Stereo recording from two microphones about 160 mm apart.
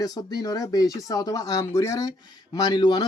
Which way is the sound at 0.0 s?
25° left (ahead or behind).